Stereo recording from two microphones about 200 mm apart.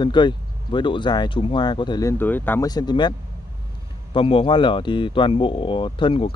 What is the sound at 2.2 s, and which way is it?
Speech, 10° left (ahead or behind).